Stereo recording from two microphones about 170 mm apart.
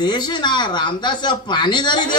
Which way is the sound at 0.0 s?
25° left (ahead or behind).